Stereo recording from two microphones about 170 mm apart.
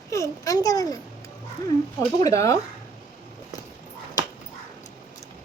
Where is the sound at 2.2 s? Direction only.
20° left (ahead or behind).